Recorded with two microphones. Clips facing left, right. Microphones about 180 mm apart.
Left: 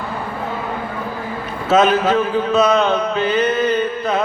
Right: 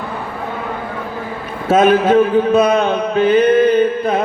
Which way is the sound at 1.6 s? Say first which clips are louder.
Right 3 dB; 55° right (ahead or behind).